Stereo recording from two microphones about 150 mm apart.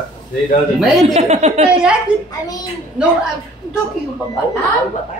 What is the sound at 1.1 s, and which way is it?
Speech, 45° right (ahead or behind).